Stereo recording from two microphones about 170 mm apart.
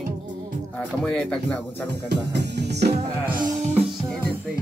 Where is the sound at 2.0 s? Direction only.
80° right.